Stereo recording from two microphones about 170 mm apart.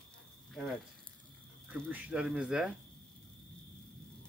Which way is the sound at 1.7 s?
5° right (ahead or behind).